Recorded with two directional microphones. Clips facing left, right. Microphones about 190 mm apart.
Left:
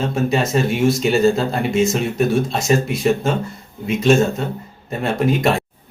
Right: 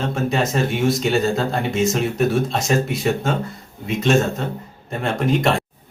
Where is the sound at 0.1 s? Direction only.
Centre (ahead or behind).